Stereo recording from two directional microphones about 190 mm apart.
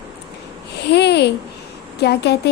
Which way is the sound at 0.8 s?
60° left (ahead or behind).